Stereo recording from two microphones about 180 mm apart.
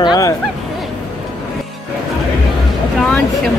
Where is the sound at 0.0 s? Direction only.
25° left (ahead or behind).